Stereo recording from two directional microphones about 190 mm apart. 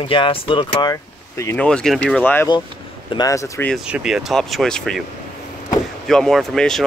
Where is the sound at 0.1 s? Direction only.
25° left (ahead or behind).